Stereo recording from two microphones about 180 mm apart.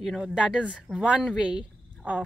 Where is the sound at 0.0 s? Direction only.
Centre (ahead or behind).